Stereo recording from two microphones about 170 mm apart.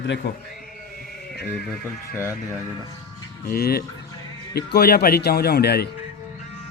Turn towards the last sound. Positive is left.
turn(degrees=75)  # may be behind; listen again after turning